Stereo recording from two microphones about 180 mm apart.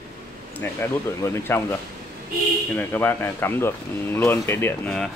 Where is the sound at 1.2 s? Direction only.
15° left (ahead or behind).